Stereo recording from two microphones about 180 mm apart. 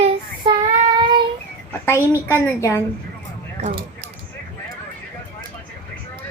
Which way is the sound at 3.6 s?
35° right (ahead or behind).